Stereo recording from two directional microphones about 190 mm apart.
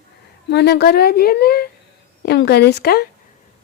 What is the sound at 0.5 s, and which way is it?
A woman's voice, 60° left (ahead or behind).